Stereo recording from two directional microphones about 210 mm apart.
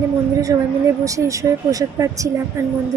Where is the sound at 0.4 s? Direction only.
15° right (ahead or behind).